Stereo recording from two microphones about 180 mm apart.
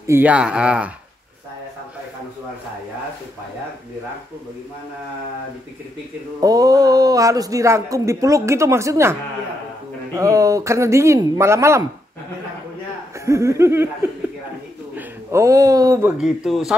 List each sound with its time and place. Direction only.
0.0 s speech: 10° right (ahead or behind)
6.4 s speech: 20° right (ahead or behind)
10.1 s speech: 15° right (ahead or behind)
13.2 s speech: 15° right (ahead or behind)
16.2 s a man's voice: centre (ahead or behind)